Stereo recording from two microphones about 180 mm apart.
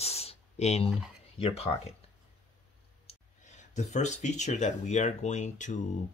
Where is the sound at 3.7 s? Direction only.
40° left (ahead or behind).